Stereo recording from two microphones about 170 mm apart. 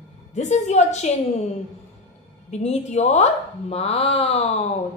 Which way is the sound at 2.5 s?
40° left (ahead or behind).